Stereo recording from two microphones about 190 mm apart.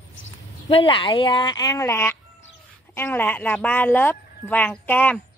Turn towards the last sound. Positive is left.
turn(degrees=10)  # may be behind; listen again after turning